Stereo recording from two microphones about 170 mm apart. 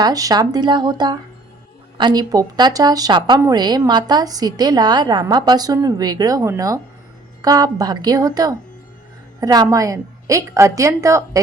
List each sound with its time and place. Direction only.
0.0 s a woman's voice: 20° right (ahead or behind)